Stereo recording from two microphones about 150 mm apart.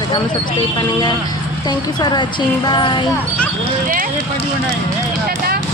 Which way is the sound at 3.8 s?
60° right (ahead or behind).